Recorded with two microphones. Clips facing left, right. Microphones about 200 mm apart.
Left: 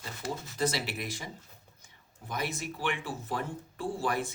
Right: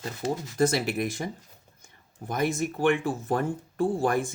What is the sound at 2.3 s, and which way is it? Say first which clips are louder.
Speech: right 8 dB; 50° right (ahead or behind).